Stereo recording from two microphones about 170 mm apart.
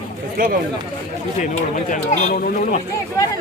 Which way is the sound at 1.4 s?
45° left (ahead or behind).